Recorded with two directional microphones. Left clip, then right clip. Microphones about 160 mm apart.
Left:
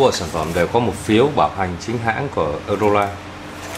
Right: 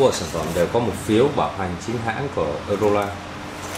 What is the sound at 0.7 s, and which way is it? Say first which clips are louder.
Speech: left 3 dB; 10° left (ahead or behind).